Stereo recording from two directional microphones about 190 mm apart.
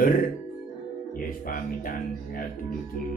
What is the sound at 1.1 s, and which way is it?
Speech, 50° left (ahead or behind).